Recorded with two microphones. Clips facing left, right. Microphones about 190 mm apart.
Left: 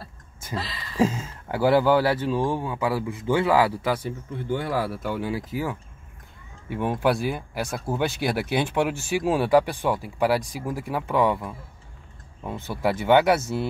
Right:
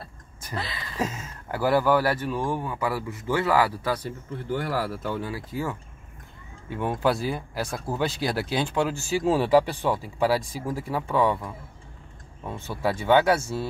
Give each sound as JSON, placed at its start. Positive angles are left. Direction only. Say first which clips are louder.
{"t": 0.5, "sound": "speech", "louder": "left 1 dB", "side_deg": 30}
{"t": 8.4, "sound": "speech", "louder": "left 2 dB", "side_deg": 15}